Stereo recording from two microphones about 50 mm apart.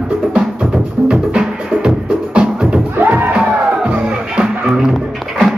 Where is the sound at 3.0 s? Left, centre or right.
Right.